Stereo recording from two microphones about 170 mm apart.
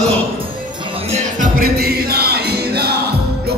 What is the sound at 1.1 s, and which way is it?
Music, 55° right (ahead or behind).